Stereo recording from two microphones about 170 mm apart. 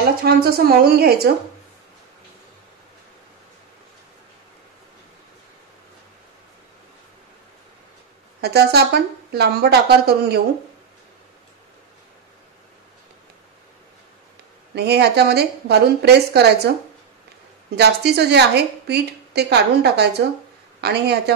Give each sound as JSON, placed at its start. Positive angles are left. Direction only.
{"t": 0.2, "sound": "a woman's voice", "side_deg": -65}
{"t": 8.4, "sound": "a woman's voice", "side_deg": -70}
{"t": 14.8, "sound": "a woman's voice", "side_deg": -70}
{"t": 17.7, "sound": "a woman's voice", "side_deg": -75}